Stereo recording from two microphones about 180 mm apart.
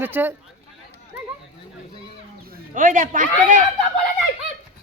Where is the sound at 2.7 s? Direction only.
45° right (ahead or behind).